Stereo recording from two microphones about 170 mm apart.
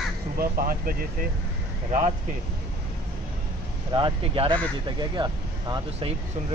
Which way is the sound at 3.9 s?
30° right (ahead or behind).